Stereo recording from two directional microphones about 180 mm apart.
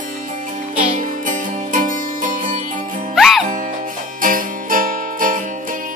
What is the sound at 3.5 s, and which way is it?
Music, 50° right (ahead or behind).